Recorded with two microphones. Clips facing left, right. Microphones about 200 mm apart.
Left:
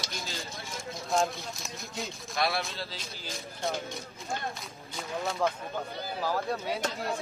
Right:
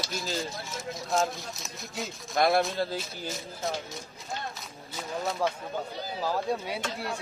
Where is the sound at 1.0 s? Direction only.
Centre (ahead or behind).